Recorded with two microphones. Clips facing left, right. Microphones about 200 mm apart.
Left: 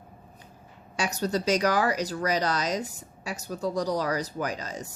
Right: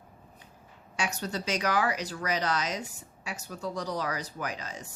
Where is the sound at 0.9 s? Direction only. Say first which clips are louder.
Left 5 dB; 40° left (ahead or behind).